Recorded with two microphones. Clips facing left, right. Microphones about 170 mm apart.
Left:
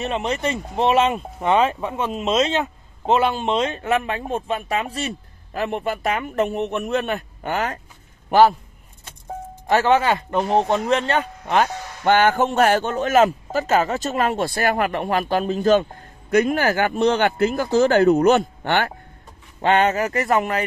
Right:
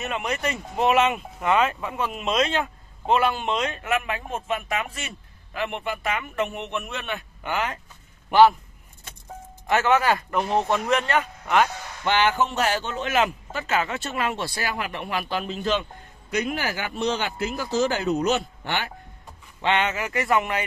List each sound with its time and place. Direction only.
0.0 s a man's voice: 25° left (ahead or behind); by 8.5 s 45° left (ahead or behind)
9.7 s speech: 30° left (ahead or behind)
12.0 s a man's voice: 50° left (ahead or behind)
19.6 s speech: 45° left (ahead or behind)